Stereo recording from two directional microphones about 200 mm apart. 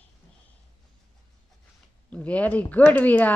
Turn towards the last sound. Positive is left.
turn(degrees=10)  # may be behind; listen again after turning